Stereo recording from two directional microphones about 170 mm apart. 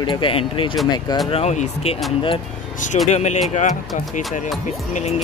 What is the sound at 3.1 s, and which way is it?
Speech, 40° left (ahead or behind).